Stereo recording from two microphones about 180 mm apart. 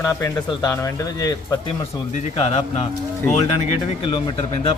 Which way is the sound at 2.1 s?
40° left (ahead or behind).